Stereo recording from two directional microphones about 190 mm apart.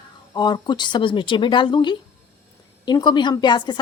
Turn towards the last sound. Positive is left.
turn(degrees=25)  # may be behind; listen again after turning